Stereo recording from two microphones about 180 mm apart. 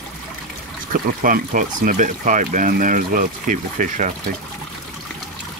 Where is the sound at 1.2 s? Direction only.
50° right (ahead or behind).